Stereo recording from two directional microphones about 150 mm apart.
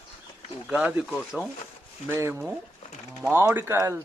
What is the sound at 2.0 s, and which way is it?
Speech, 20° right (ahead or behind).